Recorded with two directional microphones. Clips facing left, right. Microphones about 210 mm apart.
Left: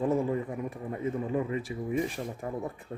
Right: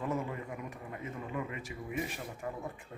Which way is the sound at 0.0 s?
30° left (ahead or behind).